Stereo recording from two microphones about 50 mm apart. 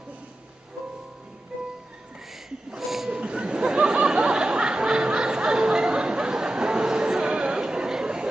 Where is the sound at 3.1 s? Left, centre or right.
Centre.